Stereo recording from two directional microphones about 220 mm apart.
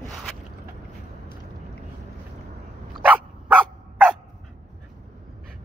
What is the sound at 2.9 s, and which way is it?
Dog, 5° right (ahead or behind).